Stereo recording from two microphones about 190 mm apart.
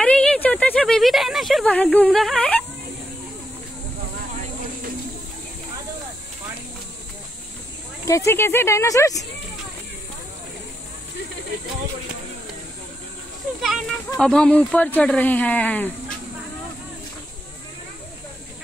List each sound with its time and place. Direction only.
0.0 s speech: 5° left (ahead or behind)
8.0 s speech: 15° left (ahead or behind)
13.6 s speech: centre (ahead or behind)